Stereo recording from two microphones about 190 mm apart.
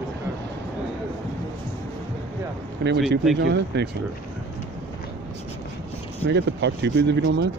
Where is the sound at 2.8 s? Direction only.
60° right (ahead or behind).